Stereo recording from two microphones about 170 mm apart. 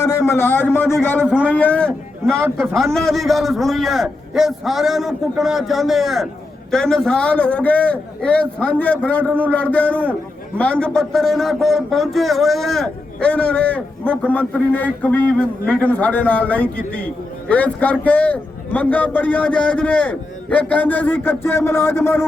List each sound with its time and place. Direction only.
0.0 s a man's voice: 20° left (ahead or behind)
1.2 s a man's voice: 5° right (ahead or behind)
1.5 s a man's voice: 10° left (ahead or behind)